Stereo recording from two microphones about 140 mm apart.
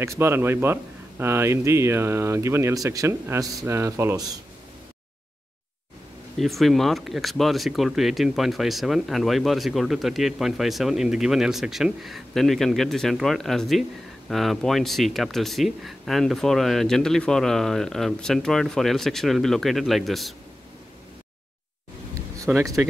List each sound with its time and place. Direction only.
0.0 s a man's voice: 20° right (ahead or behind)
6.3 s speech: centre (ahead or behind)
22.5 s speech: 5° right (ahead or behind)